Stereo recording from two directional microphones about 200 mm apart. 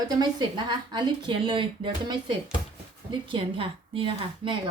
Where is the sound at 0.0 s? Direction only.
20° right (ahead or behind).